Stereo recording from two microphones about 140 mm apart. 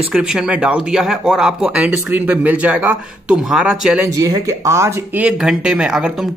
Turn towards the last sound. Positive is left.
turn(degrees=-5)  # may be behind; listen again after turning